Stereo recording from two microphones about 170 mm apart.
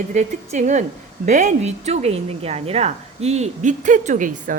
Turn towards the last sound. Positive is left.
turn(degrees=-50)  # may be behind; listen again after turning